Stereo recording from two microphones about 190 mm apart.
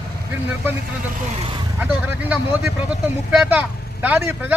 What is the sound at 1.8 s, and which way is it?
A man's voice, 5° right (ahead or behind).